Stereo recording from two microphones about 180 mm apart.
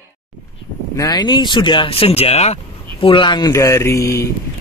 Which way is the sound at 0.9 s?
20° left (ahead or behind).